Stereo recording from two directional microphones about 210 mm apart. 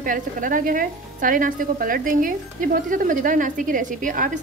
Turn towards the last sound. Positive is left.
turn(degrees=-40)  # may be behind; listen again after turning